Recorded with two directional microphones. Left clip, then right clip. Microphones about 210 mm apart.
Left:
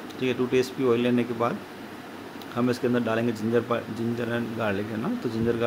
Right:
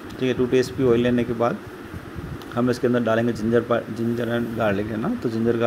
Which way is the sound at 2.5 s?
15° right (ahead or behind).